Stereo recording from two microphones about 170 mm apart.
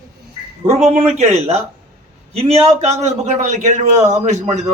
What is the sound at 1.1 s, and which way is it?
A man's voice, 40° right (ahead or behind).